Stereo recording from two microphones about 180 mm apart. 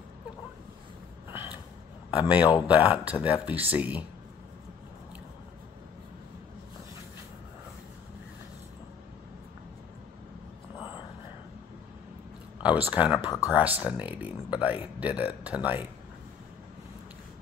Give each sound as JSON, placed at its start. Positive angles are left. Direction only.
{"t": 1.3, "sound": "a sound", "side_deg": -10}
{"t": 2.0, "sound": "a man's voice", "side_deg": -5}
{"t": 12.6, "sound": "speech", "side_deg": -10}
{"t": 13.2, "sound": "speech", "side_deg": 20}
{"t": 13.5, "sound": "speech", "side_deg": -10}